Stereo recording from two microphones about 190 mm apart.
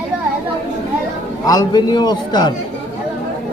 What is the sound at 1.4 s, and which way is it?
A man's voice, 20° left (ahead or behind).